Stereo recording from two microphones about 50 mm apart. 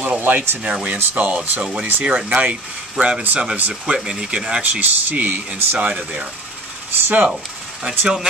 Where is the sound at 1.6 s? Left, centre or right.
Right.